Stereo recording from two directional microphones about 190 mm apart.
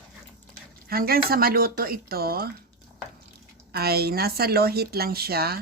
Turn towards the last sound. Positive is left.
turn(degrees=-55)  # may be behind; listen again after turning